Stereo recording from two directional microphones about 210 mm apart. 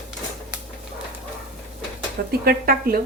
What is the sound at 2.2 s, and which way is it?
Speech, 45° right (ahead or behind).